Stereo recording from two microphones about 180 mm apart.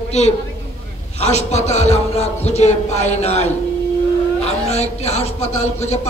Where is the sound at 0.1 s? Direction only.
40° left (ahead or behind).